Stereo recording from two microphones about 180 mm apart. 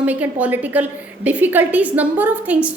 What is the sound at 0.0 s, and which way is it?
A woman's voice, 10° right (ahead or behind).